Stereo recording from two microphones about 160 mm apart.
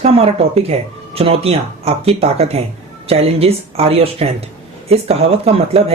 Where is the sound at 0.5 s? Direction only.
40° right (ahead or behind).